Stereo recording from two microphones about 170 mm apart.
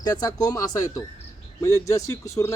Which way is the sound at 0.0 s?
20° left (ahead or behind).